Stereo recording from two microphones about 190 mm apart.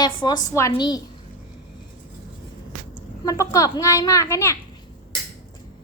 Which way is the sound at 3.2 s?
15° left (ahead or behind).